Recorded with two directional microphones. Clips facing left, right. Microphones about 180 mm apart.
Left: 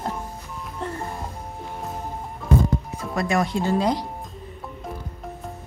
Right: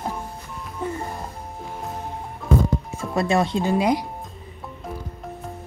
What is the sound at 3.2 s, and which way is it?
Speech, 30° right (ahead or behind).